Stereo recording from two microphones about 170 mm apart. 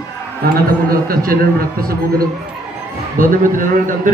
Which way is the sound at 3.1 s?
55° right (ahead or behind).